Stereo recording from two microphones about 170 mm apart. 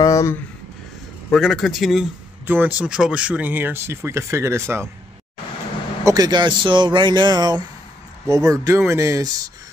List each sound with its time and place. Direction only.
0.0 s a sound: 20° left (ahead or behind)
1.3 s a man's voice: centre (ahead or behind)
2.4 s speech: 10° right (ahead or behind)
6.0 s speech: 20° right (ahead or behind)